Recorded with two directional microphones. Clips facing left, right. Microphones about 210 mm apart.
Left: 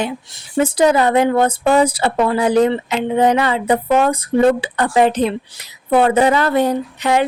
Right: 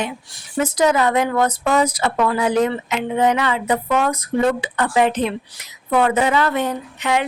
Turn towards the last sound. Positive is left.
turn(degrees=35)  # may be behind; listen again after turning